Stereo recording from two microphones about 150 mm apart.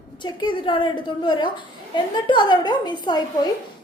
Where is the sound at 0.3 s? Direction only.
30° left (ahead or behind).